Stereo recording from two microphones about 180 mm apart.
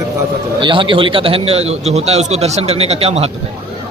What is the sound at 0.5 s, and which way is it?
A man's voice, 30° right (ahead or behind).